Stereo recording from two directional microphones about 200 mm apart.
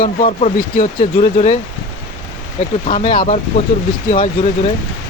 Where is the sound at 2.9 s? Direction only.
25° left (ahead or behind).